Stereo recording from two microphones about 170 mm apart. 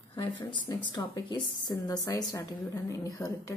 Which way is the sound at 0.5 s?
25° left (ahead or behind).